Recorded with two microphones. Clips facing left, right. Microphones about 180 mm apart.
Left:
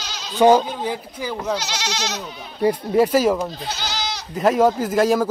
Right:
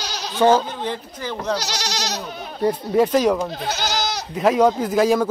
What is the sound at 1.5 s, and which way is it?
Speech, 35° right (ahead or behind).